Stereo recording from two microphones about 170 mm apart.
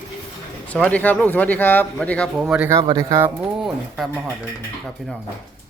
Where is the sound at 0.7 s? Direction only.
10° left (ahead or behind).